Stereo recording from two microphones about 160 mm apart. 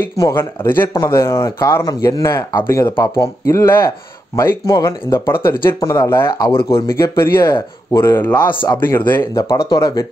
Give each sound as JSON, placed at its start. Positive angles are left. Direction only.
{"t": 0.2, "sound": "speech", "side_deg": 15}
{"t": 9.4, "sound": "speech", "side_deg": 25}